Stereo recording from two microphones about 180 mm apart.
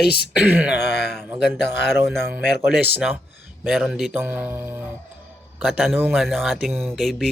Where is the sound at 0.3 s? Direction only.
5° right (ahead or behind).